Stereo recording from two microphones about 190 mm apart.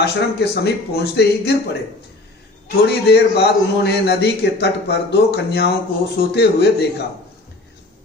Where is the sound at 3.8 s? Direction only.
60° left (ahead or behind).